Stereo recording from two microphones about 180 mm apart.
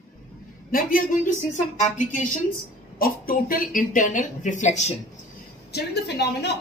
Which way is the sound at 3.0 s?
55° left (ahead or behind).